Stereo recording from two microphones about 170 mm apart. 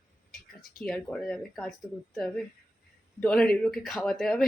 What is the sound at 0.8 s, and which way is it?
A man's voice, 5° left (ahead or behind).